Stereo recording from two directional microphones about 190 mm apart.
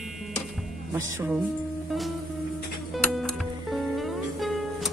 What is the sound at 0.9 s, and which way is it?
Speech, 10° right (ahead or behind).